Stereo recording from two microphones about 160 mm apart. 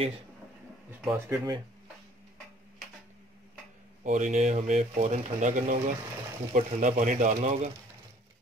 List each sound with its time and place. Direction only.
0.8 s speech: 15° right (ahead or behind)
4.0 s speech: 50° right (ahead or behind)